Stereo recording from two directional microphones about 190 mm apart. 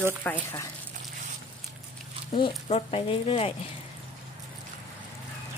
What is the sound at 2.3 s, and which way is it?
Speech, 30° left (ahead or behind).